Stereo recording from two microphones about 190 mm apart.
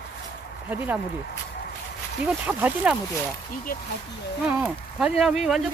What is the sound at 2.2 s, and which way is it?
Speech, 5° right (ahead or behind).